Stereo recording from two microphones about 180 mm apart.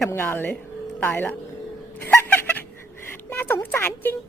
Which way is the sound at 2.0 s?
10° left (ahead or behind).